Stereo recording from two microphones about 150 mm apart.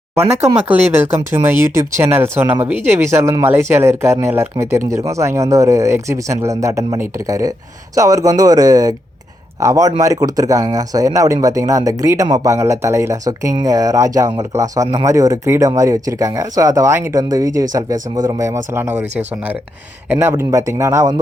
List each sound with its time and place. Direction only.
0.7 s speech: 15° right (ahead or behind)
20.1 s speech: 15° right (ahead or behind)